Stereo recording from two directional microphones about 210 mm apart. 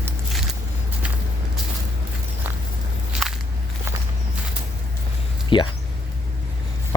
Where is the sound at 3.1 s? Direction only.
Centre (ahead or behind).